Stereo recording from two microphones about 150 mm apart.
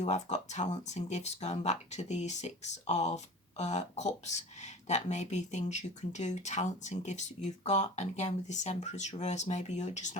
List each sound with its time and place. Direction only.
0.0 s speech: 50° left (ahead or behind)